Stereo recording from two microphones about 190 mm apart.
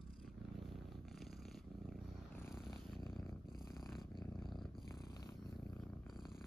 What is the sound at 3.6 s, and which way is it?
Purr, centre (ahead or behind).